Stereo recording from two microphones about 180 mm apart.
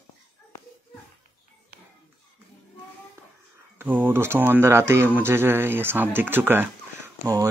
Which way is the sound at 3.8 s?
10° right (ahead or behind).